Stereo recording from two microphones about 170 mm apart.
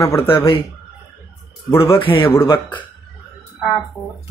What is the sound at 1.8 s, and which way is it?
Speech, 30° left (ahead or behind).